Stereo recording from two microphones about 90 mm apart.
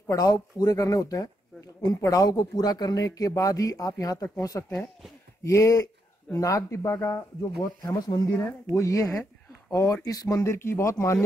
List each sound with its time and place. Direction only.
0.0 s speech: 45° left (ahead or behind)
7.8 s speech: 45° left (ahead or behind)
8.3 s speech: 25° left (ahead or behind)
8.7 s speech: 35° left (ahead or behind)